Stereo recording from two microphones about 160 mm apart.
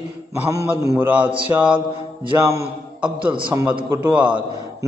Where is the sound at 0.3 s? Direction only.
20° right (ahead or behind).